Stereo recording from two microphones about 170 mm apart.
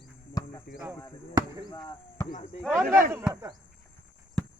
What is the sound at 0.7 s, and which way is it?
Speech, 65° left (ahead or behind).